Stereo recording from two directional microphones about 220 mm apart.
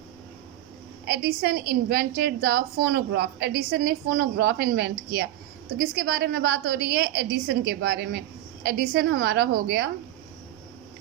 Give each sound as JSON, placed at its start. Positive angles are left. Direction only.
{"t": 1.0, "sound": "a woman's voice", "side_deg": -45}